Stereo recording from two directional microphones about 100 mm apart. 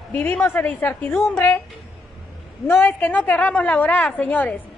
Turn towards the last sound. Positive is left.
turn(degrees=15)  # may be behind; listen again after turning